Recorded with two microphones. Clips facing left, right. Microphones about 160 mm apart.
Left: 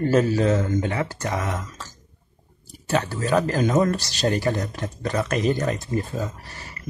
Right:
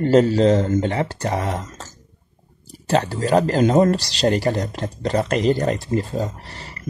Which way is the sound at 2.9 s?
35° right (ahead or behind).